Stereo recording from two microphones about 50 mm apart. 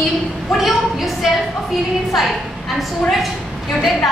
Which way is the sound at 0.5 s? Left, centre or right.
Centre.